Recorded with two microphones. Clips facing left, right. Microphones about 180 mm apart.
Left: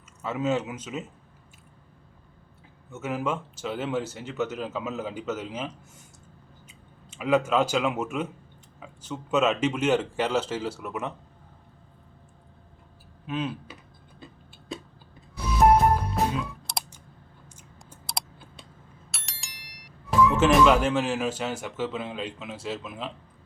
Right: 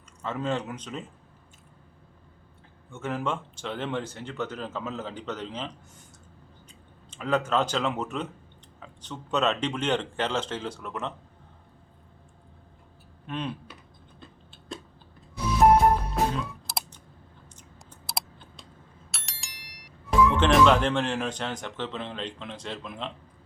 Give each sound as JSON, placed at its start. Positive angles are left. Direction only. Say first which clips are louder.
{"t": 0.2, "sound": "speech", "louder": "left 3 dB", "side_deg": 5}
{"t": 2.9, "sound": "speech", "louder": "left 1 dB", "side_deg": 5}
{"t": 13.2, "sound": "speech", "louder": "left 3 dB", "side_deg": 5}
{"t": 15.7, "sound": "music", "louder": "even", "side_deg": 5}
{"t": 18.0, "sound": "computer keyboard", "louder": "even", "side_deg": 0}
{"t": 19.1, "sound": "speech", "louder": "right 1 dB", "side_deg": 0}